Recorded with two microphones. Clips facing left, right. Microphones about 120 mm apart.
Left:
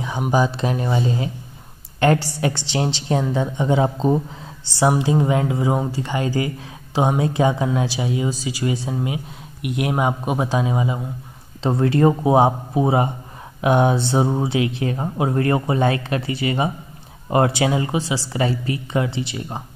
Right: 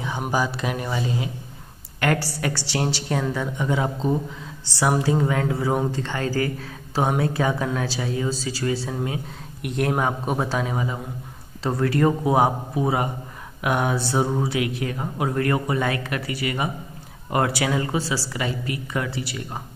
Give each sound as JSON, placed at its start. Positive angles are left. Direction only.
{"t": 0.3, "sound": "speech", "side_deg": 25}
{"t": 18.3, "sound": "speech", "side_deg": 30}